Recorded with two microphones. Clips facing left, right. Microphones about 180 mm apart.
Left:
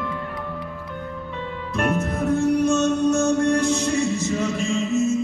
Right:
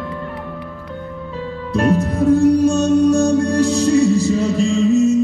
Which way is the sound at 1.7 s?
35° right (ahead or behind).